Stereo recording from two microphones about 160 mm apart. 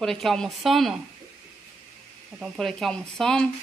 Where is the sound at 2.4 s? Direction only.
5° left (ahead or behind).